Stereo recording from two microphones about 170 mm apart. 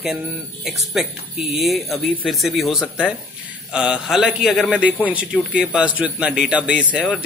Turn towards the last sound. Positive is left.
turn(degrees=-5)  # may be behind; listen again after turning